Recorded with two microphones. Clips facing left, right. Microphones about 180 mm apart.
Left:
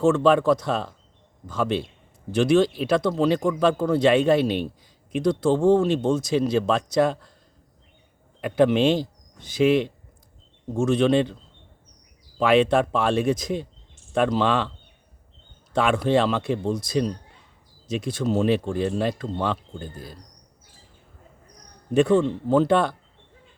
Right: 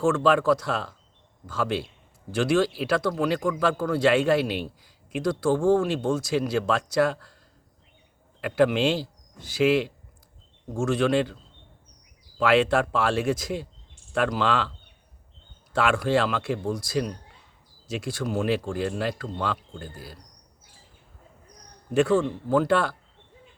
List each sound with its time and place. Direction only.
0.0 s a man's voice: 20° left (ahead or behind)
8.4 s a man's voice: 20° left (ahead or behind)
12.4 s a man's voice: 20° left (ahead or behind)
15.7 s a man's voice: 20° left (ahead or behind)
21.9 s a man's voice: 20° left (ahead or behind)